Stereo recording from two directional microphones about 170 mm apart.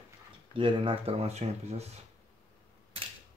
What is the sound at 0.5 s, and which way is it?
Speech, 30° right (ahead or behind).